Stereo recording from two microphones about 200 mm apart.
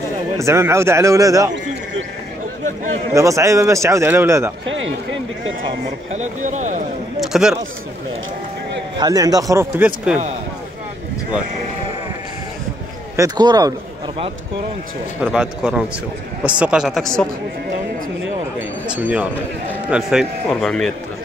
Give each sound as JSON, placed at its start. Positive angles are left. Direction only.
{"t": 0.4, "sound": "a man's voice", "side_deg": -15}
{"t": 3.2, "sound": "a man's voice", "side_deg": -15}
{"t": 4.6, "sound": "speech", "side_deg": -70}
{"t": 6.1, "sound": "speech", "side_deg": -35}
{"t": 7.2, "sound": "a sound", "side_deg": -5}
{"t": 8.9, "sound": "a man's voice", "side_deg": -20}
{"t": 13.1, "sound": "a man's voice", "side_deg": -20}
{"t": 15.3, "sound": "a man's voice", "side_deg": -5}
{"t": 18.9, "sound": "a man's voice", "side_deg": -10}